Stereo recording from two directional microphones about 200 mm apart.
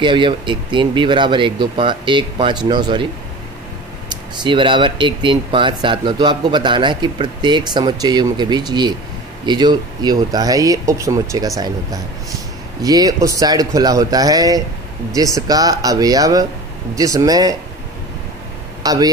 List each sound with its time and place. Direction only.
0.0 s speech: 25° right (ahead or behind)
4.1 s speech: 25° right (ahead or behind)
18.8 s speech: 20° right (ahead or behind)